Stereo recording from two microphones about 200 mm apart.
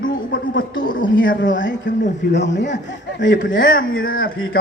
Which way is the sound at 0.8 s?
45° left (ahead or behind).